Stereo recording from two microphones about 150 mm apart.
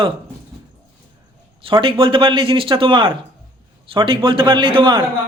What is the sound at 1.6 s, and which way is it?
A man's voice, 35° right (ahead or behind).